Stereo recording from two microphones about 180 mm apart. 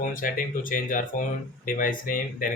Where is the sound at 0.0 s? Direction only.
50° left (ahead or behind).